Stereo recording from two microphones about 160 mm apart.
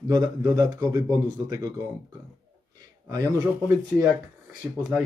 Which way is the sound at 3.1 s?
25° right (ahead or behind).